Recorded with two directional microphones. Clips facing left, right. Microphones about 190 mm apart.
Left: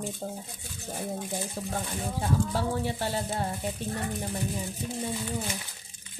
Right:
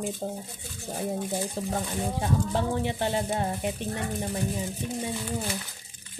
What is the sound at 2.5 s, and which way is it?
Speech, 20° right (ahead or behind).